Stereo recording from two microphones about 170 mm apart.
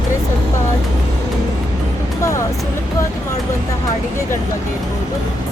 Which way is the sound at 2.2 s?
15° left (ahead or behind).